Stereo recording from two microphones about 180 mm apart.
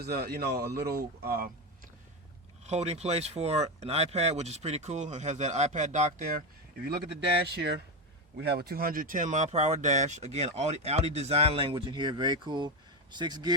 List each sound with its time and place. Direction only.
0.0 s speech: 60° right (ahead or behind)
2.6 s speech: 35° right (ahead or behind)
6.8 s speech: 60° right (ahead or behind); by 13.5 s 25° right (ahead or behind)